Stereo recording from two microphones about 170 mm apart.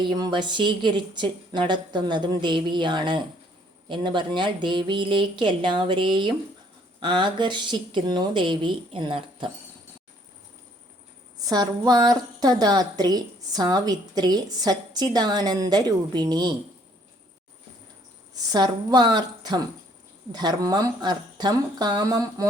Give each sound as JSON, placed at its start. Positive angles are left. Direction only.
{"t": 0.0, "sound": "a woman's voice", "side_deg": -25}
{"t": 11.4, "sound": "a woman's voice", "side_deg": -25}
{"t": 18.5, "sound": "a woman's voice", "side_deg": -25}